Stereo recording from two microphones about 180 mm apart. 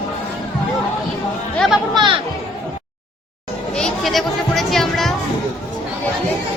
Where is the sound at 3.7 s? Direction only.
Centre (ahead or behind).